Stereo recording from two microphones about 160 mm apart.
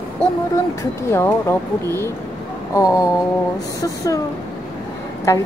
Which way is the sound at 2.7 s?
20° left (ahead or behind).